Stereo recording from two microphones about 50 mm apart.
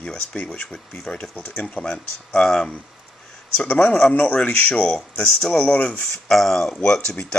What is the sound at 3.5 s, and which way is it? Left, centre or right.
Speech, left.